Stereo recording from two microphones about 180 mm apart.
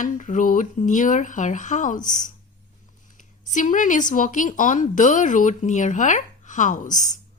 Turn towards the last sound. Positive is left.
turn(degrees=45)  # may be behind; listen again after turning